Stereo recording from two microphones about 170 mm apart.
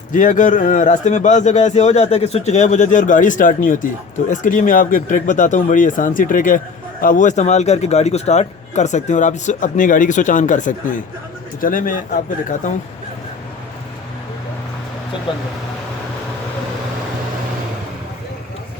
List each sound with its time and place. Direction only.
0.1 s speech: 50° left (ahead or behind)
15.3 s speech: 30° left (ahead or behind)